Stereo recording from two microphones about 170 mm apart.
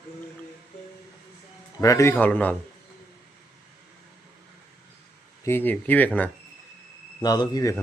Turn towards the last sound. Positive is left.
turn(degrees=25)  # may be behind; listen again after turning